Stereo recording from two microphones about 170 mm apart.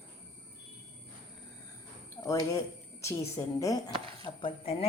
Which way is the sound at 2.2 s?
20° left (ahead or behind).